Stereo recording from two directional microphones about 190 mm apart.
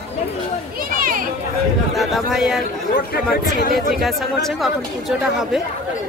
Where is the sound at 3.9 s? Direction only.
Centre (ahead or behind).